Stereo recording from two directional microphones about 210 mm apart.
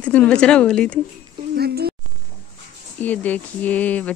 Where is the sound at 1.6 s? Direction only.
50° right (ahead or behind).